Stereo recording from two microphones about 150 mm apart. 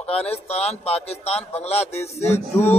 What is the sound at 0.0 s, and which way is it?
A man's voice, 45° left (ahead or behind).